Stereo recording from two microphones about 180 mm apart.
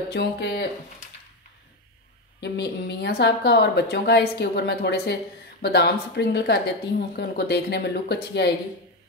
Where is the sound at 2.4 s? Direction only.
70° left (ahead or behind).